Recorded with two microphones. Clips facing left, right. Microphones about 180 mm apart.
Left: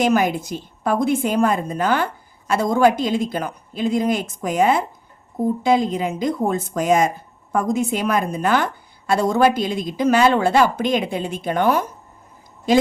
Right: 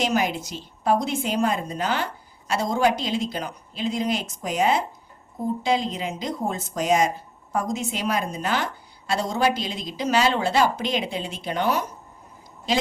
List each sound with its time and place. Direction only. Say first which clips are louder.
0.0 s a woman's voice: left 6 dB; 50° left (ahead or behind)